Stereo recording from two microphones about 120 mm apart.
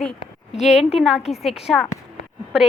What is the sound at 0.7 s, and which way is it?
Speech, 60° left (ahead or behind).